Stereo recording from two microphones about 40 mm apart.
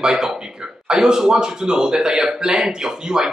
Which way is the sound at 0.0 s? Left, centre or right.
Centre.